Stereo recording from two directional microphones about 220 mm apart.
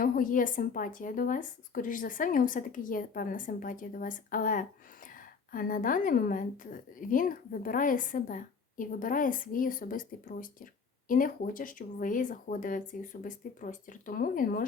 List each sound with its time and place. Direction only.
0.0 s a woman's voice: 40° left (ahead or behind)